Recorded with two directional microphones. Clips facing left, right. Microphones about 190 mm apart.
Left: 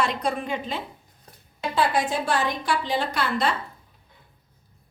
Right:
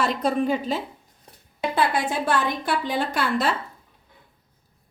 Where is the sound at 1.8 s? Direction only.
55° right (ahead or behind).